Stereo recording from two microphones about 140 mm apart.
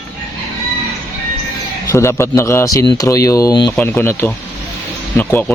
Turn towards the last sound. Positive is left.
turn(degrees=15)  # may be behind; listen again after turning